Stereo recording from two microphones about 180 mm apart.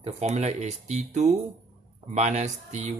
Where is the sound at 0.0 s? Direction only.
35° right (ahead or behind).